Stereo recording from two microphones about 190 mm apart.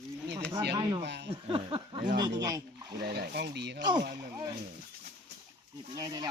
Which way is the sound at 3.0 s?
55° right (ahead or behind).